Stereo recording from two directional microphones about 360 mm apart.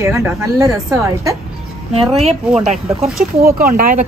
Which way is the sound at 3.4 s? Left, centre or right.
Right.